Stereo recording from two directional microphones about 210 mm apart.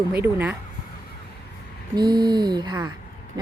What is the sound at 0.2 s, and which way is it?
Speech, 10° right (ahead or behind).